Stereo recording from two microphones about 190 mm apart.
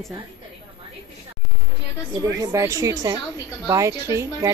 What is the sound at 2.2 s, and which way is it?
A woman's voice, 15° right (ahead or behind).